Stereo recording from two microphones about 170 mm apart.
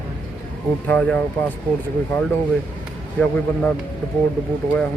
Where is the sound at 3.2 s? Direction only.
10° left (ahead or behind).